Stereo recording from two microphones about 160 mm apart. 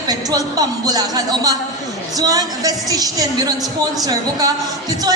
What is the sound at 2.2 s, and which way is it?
Music, 25° right (ahead or behind).